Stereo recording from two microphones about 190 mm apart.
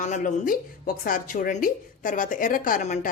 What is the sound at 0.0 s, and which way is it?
Speech, 40° left (ahead or behind).